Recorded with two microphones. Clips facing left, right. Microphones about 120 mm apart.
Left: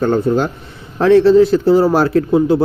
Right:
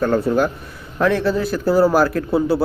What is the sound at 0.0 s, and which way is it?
Speech, 25° left (ahead or behind).